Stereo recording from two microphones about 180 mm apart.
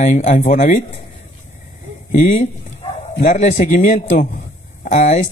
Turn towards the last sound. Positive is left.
turn(degrees=40)  # may be behind; listen again after turning